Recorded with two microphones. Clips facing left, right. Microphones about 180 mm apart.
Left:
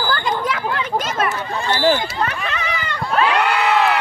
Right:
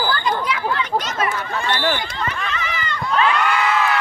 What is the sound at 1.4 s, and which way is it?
Speech, 30° left (ahead or behind).